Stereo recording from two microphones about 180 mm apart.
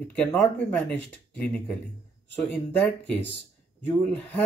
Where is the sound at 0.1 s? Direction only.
10° left (ahead or behind).